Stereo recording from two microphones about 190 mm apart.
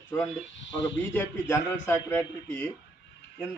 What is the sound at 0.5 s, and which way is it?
Speech, 70° left (ahead or behind).